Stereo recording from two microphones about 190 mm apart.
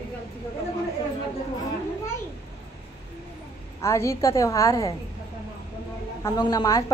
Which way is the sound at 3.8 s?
15° left (ahead or behind).